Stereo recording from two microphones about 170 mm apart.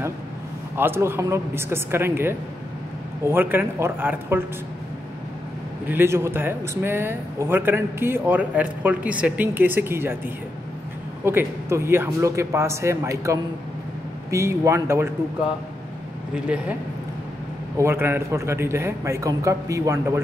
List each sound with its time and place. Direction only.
0.7 s a man's voice: 15° right (ahead or behind)
5.9 s a man's voice: 15° right (ahead or behind)
16.4 s a man's voice: 5° right (ahead or behind)
17.7 s a man's voice: 15° right (ahead or behind)